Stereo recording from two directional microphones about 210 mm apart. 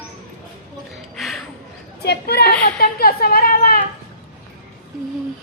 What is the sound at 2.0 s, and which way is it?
A woman's voice, 50° left (ahead or behind).